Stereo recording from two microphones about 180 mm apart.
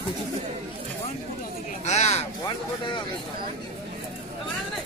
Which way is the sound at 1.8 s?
40° left (ahead or behind).